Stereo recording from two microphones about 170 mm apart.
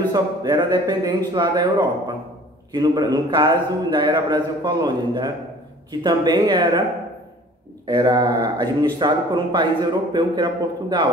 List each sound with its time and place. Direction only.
0.1 s a man's voice: 25° right (ahead or behind)
7.8 s a man's voice: 25° right (ahead or behind)